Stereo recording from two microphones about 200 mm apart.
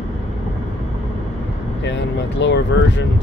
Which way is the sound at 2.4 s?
65° left (ahead or behind).